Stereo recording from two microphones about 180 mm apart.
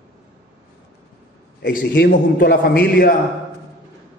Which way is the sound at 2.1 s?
55° left (ahead or behind).